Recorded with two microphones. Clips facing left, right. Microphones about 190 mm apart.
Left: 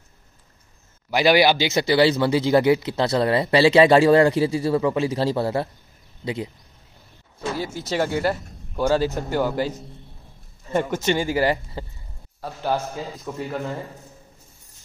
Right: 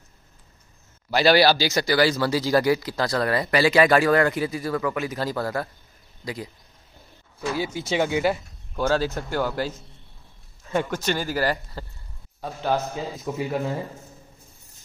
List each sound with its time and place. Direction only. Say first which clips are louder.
1.1 s speech: left 1 dB; 15° left (ahead or behind)
7.8 s speech: even; centre (ahead or behind)
8.7 s speech: left 3 dB; 10° left (ahead or behind)
10.7 s speech: left 2 dB; 5° left (ahead or behind)
11.1 s a man's voice: left 4 dB; 20° left (ahead or behind)
13.2 s speech: right 4 dB; 5° right (ahead or behind)